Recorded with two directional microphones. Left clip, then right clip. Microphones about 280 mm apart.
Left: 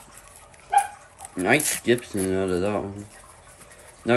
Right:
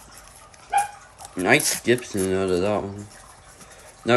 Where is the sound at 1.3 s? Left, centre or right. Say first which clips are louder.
Right 2 dB; centre.